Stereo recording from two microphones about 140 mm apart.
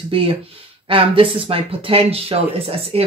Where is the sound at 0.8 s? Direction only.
40° right (ahead or behind).